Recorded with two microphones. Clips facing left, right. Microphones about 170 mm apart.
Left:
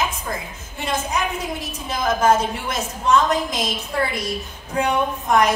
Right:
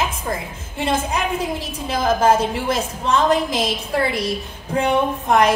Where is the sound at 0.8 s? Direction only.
30° right (ahead or behind).